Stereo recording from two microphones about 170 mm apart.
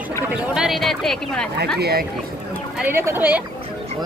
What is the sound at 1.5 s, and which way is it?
Speech, 70° right (ahead or behind).